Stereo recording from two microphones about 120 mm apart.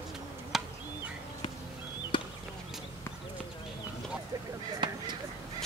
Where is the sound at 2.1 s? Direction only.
45° left (ahead or behind).